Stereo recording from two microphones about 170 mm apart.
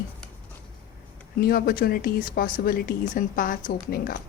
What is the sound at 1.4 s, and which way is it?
Speech, 60° left (ahead or behind).